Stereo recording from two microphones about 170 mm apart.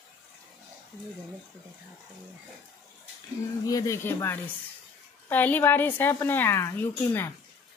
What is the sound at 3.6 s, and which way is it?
A woman's voice, 20° left (ahead or behind).